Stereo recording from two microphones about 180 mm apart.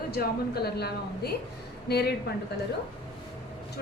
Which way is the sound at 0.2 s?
60° left (ahead or behind).